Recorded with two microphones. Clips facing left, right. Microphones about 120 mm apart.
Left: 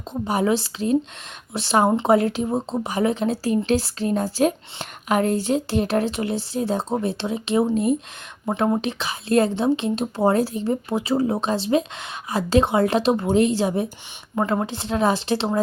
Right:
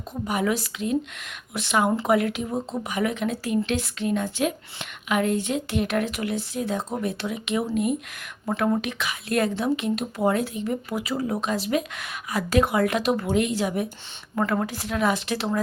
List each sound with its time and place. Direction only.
0.1 s a woman's voice: 30° left (ahead or behind)